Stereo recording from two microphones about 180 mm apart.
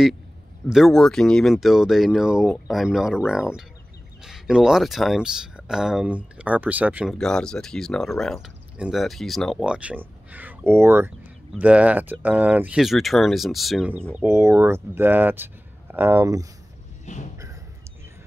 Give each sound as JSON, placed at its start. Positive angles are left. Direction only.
{"t": 0.7, "sound": "speech", "side_deg": 0}
{"t": 7.2, "sound": "speech", "side_deg": 5}
{"t": 14.1, "sound": "speech", "side_deg": -15}
{"t": 17.0, "sound": "a sound", "side_deg": 40}